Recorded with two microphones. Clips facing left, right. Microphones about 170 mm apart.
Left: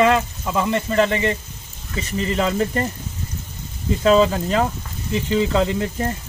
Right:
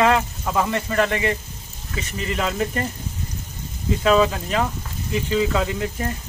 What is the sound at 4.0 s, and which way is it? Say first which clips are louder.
Speech: left 3 dB; 35° left (ahead or behind).